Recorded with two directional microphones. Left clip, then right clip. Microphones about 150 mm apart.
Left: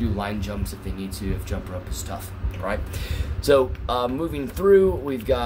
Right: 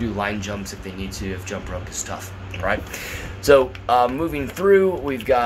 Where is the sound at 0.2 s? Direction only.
20° left (ahead or behind).